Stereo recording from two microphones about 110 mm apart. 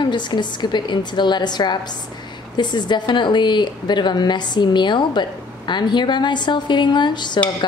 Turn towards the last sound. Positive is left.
turn(degrees=45)  # may be behind; listen again after turning